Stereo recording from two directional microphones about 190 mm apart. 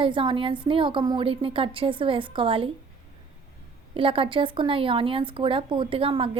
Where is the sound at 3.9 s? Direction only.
25° right (ahead or behind).